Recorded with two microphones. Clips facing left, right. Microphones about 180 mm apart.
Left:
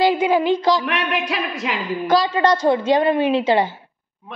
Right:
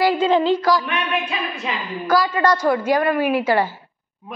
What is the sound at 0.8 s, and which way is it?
Speech, 85° left.